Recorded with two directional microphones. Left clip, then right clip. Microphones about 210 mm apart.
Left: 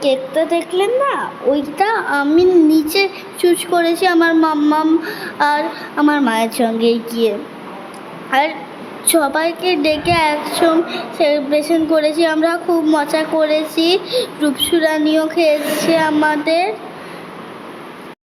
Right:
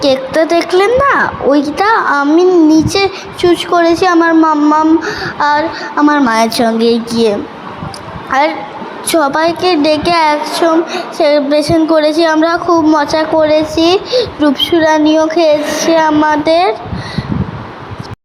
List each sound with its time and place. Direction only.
0.0 s a woman's voice: 15° right (ahead or behind)